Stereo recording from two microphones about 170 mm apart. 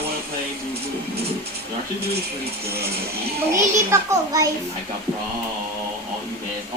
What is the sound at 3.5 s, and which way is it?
Speech, 15° right (ahead or behind).